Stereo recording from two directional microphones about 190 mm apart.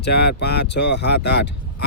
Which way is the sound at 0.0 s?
60° left (ahead or behind).